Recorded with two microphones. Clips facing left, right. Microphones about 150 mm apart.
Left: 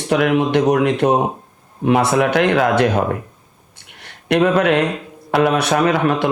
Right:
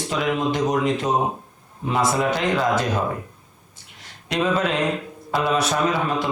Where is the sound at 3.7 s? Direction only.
65° left (ahead or behind).